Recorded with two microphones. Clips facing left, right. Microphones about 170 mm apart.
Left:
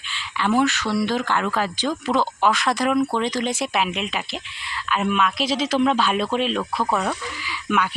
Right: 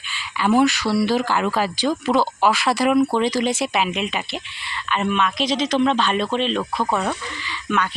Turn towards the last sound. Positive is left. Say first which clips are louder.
# even
turn(degrees=10)  # may be behind; listen again after turning